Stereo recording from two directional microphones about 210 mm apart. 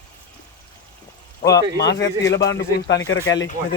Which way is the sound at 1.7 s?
55° left (ahead or behind).